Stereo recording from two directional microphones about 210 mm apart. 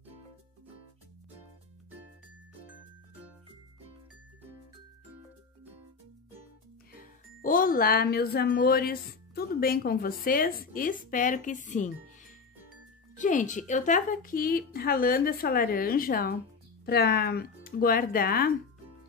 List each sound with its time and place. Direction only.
7.4 s a woman's voice: 40° left (ahead or behind)